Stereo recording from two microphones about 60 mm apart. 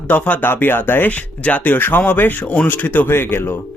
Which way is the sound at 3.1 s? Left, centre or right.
Left.